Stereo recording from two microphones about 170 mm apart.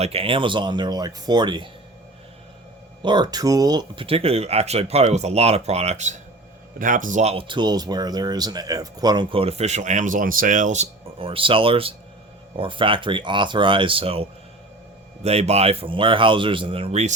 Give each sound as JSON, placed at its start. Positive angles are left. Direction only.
{"t": 0.0, "sound": "speech", "side_deg": -35}
{"t": 3.0, "sound": "speech", "side_deg": -25}